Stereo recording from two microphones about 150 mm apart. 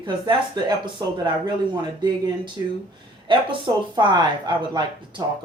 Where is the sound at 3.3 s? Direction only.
35° right (ahead or behind).